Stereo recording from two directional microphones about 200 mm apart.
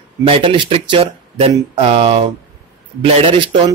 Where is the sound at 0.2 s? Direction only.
25° right (ahead or behind).